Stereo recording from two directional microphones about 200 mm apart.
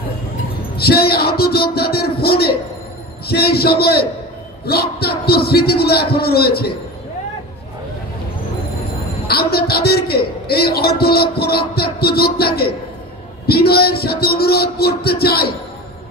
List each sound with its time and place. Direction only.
0.7 s a man's voice: 50° left (ahead or behind)
9.3 s a man's voice: 50° left (ahead or behind)